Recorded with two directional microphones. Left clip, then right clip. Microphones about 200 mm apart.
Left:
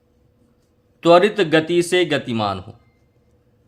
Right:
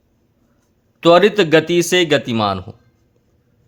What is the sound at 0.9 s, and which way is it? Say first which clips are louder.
Speech: right 2 dB; 35° right (ahead or behind).